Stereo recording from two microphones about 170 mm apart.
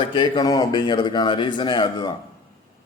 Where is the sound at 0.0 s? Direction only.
30° left (ahead or behind).